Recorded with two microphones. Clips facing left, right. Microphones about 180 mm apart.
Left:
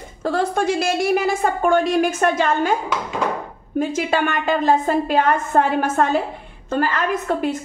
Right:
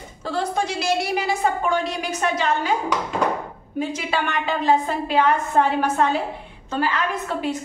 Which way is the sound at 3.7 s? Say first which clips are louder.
Left 5 dB; 50° left (ahead or behind).